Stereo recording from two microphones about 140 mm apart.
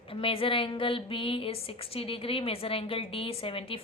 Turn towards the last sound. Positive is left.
turn(degrees=40)  # may be behind; listen again after turning